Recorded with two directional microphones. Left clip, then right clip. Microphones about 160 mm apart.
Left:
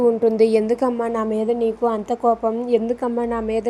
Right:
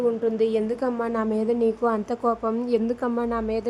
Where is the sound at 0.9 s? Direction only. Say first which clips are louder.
Left 4 dB; 10° left (ahead or behind).